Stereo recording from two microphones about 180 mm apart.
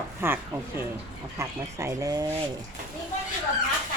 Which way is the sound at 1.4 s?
15° right (ahead or behind).